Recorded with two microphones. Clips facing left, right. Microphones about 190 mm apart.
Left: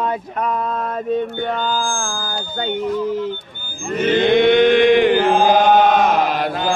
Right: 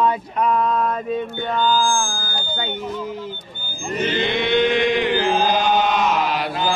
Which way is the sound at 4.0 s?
50° left (ahead or behind).